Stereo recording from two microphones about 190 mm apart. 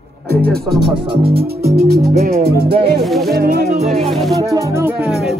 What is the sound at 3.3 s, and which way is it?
Music, 50° right (ahead or behind).